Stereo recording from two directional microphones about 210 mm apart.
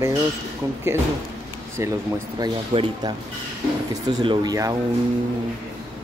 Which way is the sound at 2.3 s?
25° right (ahead or behind).